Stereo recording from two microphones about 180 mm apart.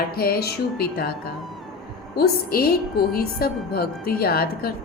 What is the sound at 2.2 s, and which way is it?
A woman's voice, 55° left (ahead or behind).